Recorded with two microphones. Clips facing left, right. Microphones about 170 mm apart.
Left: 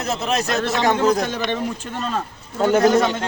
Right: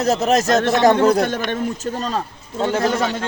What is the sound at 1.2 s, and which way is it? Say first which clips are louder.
A man's voice: right 2 dB; 50° right (ahead or behind).